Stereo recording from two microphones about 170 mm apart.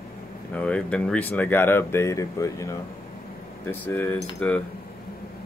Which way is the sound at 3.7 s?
10° left (ahead or behind).